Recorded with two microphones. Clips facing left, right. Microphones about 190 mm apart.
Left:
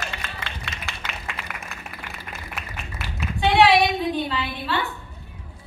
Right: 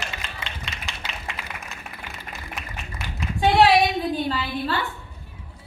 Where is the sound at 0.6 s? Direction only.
20° right (ahead or behind).